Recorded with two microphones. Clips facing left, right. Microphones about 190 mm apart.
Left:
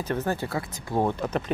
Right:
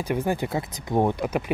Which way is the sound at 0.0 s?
10° right (ahead or behind).